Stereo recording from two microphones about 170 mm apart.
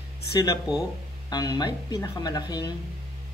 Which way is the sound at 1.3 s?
25° left (ahead or behind).